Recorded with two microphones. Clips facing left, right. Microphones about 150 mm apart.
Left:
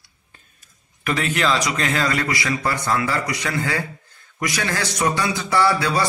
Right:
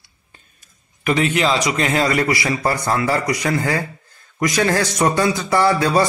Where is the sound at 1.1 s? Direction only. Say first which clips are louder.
Right 4 dB; 25° right (ahead or behind).